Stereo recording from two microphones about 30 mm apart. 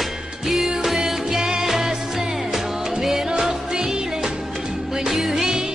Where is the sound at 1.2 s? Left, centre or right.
Centre.